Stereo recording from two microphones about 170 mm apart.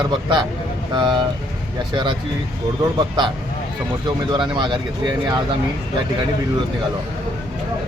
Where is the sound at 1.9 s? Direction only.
25° right (ahead or behind).